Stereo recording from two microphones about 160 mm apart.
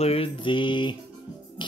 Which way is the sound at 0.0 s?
35° left (ahead or behind).